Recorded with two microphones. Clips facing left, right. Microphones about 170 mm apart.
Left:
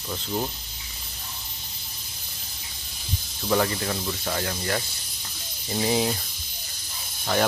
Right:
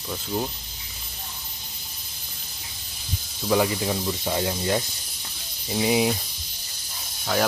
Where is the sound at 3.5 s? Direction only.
10° right (ahead or behind).